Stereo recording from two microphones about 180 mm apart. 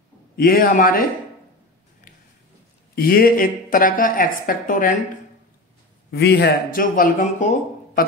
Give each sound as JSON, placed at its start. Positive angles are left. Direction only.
{"t": 0.4, "sound": "a woman's voice", "side_deg": 50}
{"t": 3.0, "sound": "a woman's voice", "side_deg": 55}
{"t": 6.1, "sound": "a woman's voice", "side_deg": 65}